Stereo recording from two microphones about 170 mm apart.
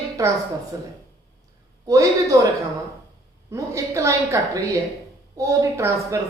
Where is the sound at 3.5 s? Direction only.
15° right (ahead or behind).